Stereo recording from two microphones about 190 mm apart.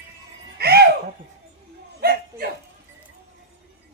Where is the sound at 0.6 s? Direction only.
55° right (ahead or behind).